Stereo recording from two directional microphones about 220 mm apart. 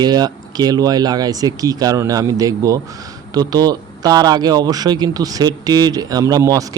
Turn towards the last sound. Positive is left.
turn(degrees=-15)  # may be behind; listen again after turning